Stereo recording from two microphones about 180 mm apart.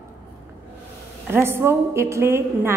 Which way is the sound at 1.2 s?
15° right (ahead or behind).